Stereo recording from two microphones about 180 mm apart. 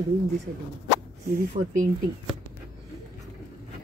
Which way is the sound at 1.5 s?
45° right (ahead or behind).